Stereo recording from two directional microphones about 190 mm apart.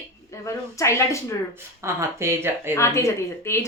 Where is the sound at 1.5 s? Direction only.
15° right (ahead or behind).